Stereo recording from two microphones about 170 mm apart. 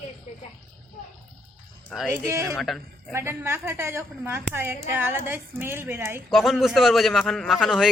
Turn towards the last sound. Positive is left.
turn(degrees=0)  # may be behind; listen again after turning